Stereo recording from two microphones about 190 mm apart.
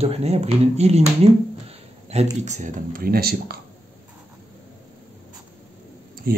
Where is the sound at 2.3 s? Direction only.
40° right (ahead or behind).